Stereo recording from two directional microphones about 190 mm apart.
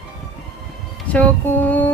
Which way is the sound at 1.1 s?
10° left (ahead or behind).